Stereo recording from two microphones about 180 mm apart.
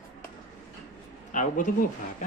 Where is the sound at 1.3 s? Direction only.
45° left (ahead or behind).